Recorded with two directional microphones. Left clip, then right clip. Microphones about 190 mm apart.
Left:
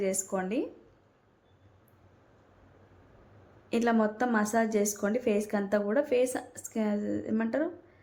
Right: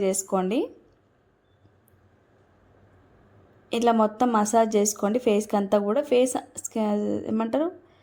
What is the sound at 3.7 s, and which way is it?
A woman's voice, 30° right (ahead or behind).